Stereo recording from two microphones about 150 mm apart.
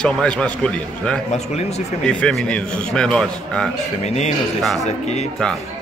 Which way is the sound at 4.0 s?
50° left (ahead or behind).